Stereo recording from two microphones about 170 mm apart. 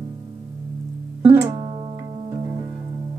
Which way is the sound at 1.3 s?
20° right (ahead or behind).